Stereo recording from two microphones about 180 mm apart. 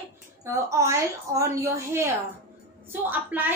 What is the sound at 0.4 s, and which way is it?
A woman's voice, 15° right (ahead or behind).